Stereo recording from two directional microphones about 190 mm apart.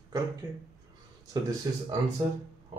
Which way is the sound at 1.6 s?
20° right (ahead or behind).